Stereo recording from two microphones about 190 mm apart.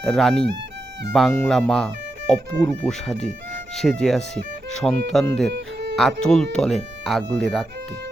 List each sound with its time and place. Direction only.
0.0 s speech: centre (ahead or behind)
3.8 s speech: centre (ahead or behind)
5.5 s music: 60° right (ahead or behind)
6.0 s speech: centre (ahead or behind)